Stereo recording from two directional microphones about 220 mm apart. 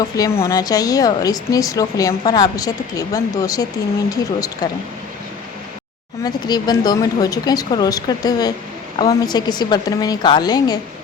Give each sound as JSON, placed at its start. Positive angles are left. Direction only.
{"t": 0.2, "sound": "speech", "side_deg": 15}
{"t": 6.2, "sound": "a woman's voice", "side_deg": 20}